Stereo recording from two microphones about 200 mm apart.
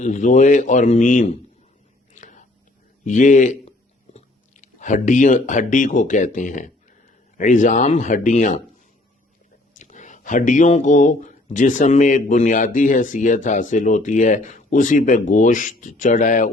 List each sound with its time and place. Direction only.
0.0 s speech: 40° left (ahead or behind)
2.1 s whispering: 35° left (ahead or behind)
3.0 s speech: 40° left (ahead or behind)
9.7 s speech: 40° left (ahead or behind)